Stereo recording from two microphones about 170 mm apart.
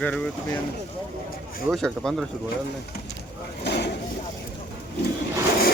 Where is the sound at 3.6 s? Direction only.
80° left.